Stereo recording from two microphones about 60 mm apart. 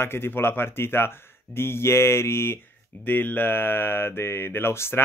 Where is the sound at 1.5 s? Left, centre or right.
Left.